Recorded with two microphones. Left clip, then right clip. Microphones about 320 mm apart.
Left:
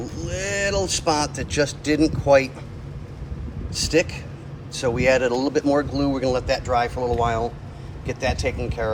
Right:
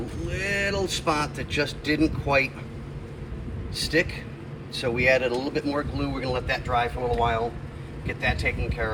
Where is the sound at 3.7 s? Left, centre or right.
Centre.